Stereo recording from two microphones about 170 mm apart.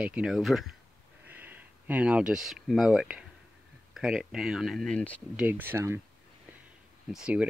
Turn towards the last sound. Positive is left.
turn(degrees=-5)  # may be behind; listen again after turning